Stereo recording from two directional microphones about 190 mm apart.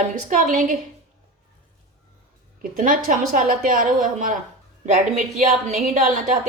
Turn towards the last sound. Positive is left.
turn(degrees=-40)  # may be behind; listen again after turning